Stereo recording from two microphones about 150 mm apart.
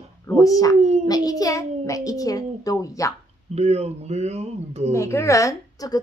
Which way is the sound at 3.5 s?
45° right (ahead or behind).